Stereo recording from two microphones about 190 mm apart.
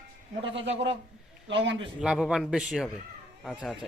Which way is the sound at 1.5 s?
70° right (ahead or behind).